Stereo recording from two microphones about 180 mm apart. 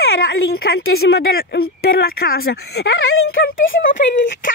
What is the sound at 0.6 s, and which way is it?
Speech, 60° left (ahead or behind).